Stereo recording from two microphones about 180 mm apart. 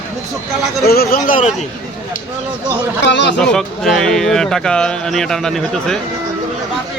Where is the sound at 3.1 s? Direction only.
75° left (ahead or behind).